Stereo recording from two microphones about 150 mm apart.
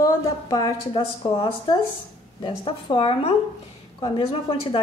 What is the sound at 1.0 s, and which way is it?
A woman's voice, 35° left (ahead or behind).